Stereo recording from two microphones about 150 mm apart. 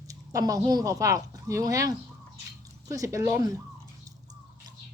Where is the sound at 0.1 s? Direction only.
25° right (ahead or behind).